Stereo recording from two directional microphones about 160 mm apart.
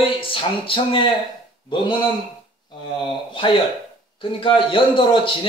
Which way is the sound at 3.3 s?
30° left (ahead or behind).